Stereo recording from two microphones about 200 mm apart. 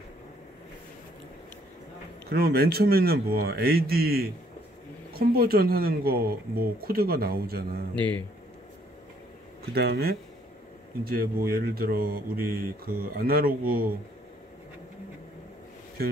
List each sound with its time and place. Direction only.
2.2 s speech: 50° right (ahead or behind)
7.9 s speech: 5° left (ahead or behind)
9.8 s speech: 50° right (ahead or behind)